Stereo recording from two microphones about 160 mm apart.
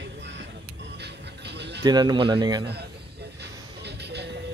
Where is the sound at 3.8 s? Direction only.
90° right.